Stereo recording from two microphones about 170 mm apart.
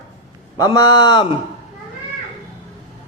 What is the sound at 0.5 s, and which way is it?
Speech, 20° left (ahead or behind).